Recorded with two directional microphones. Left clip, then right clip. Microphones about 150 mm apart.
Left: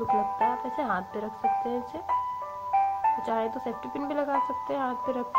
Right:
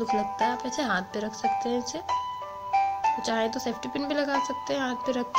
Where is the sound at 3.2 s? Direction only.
15° right (ahead or behind).